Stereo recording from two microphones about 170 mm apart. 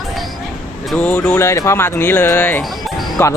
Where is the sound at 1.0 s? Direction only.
10° left (ahead or behind).